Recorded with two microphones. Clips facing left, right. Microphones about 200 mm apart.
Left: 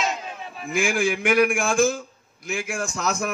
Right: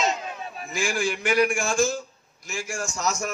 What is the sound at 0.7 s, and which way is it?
A man's voice, 55° left (ahead or behind).